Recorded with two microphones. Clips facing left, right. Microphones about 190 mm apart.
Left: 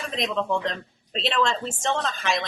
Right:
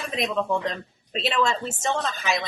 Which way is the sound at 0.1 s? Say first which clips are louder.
Right 1 dB; 5° right (ahead or behind).